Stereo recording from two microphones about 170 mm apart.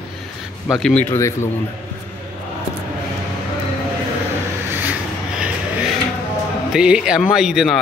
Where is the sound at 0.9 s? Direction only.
15° left (ahead or behind).